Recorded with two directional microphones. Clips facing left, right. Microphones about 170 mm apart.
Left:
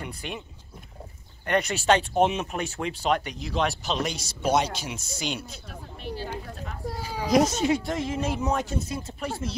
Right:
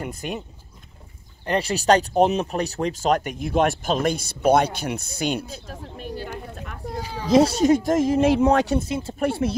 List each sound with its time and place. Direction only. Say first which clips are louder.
0.0 s speech: right 6 dB; 45° right (ahead or behind)
1.4 s speech: right 2 dB; 30° right (ahead or behind); by 6.2 s 50° right (ahead or behind)
7.2 s speech: right 5 dB; 30° right (ahead or behind)
8.4 s speech: right 9 dB; 70° right (ahead or behind)
8.8 s speech: right 6 dB; 25° right (ahead or behind)
9.2 s speech: right 10 dB; 65° right (ahead or behind)